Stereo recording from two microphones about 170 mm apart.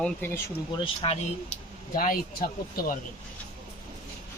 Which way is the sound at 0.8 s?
35° left (ahead or behind).